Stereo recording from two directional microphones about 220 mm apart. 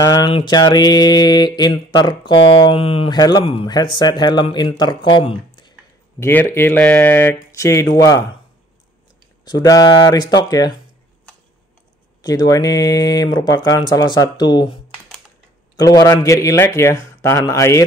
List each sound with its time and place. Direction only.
0.0 s speech: 20° left (ahead or behind)
9.4 s speech: 15° left (ahead or behind)
12.2 s speech: 15° left (ahead or behind)
15.8 s speech: 15° left (ahead or behind)